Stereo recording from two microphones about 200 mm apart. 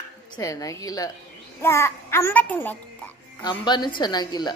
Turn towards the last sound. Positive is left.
turn(degrees=20)  # may be behind; listen again after turning